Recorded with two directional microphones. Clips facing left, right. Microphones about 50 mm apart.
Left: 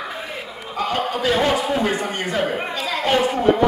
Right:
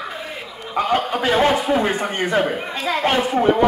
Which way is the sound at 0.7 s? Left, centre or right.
Right.